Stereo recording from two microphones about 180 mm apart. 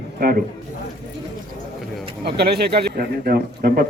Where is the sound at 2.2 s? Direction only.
60° right (ahead or behind).